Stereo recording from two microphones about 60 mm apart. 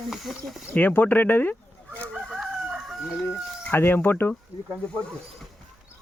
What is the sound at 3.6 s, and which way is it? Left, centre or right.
Speech, left.